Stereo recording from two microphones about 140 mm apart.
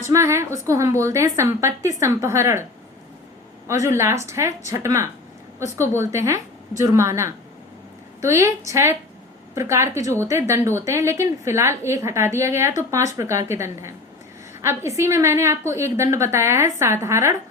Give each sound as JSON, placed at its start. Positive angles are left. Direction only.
{"t": 0.0, "sound": "a woman's voice", "side_deg": -20}
{"t": 3.7, "sound": "a woman's voice", "side_deg": -20}